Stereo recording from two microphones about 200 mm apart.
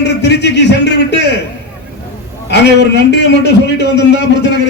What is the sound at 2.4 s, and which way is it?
A man's voice, 60° left (ahead or behind).